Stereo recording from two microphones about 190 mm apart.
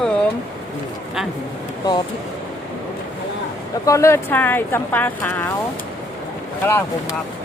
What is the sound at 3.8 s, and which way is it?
Speech, 15° left (ahead or behind).